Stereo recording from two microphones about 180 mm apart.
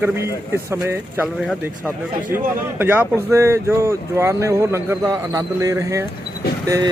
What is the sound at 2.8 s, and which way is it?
Speech, 10° right (ahead or behind).